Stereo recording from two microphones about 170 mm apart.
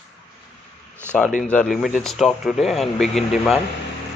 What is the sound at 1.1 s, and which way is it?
Speech, 5° left (ahead or behind).